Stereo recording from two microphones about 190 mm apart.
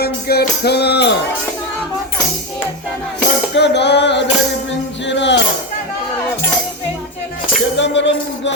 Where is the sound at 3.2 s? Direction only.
65° left (ahead or behind).